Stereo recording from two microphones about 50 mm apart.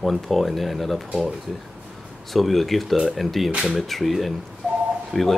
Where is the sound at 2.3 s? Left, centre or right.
Centre.